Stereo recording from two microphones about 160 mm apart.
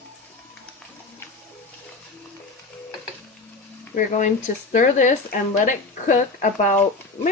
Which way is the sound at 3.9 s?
50° left (ahead or behind).